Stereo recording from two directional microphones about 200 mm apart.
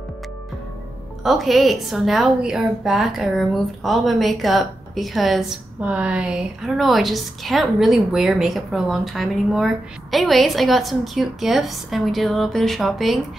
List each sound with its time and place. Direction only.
1.2 s a woman's voice: centre (ahead or behind)